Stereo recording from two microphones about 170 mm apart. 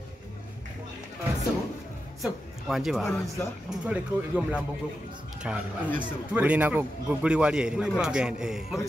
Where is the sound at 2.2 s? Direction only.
Centre (ahead or behind).